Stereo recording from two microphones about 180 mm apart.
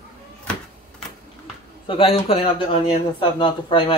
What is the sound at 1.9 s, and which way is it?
Speech, 30° left (ahead or behind).